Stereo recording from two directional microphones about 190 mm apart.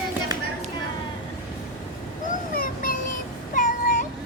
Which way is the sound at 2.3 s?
45° left (ahead or behind).